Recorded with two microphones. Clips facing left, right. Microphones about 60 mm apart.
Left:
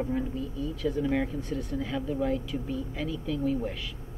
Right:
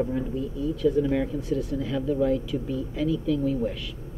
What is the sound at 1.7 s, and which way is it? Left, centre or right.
Speech, centre.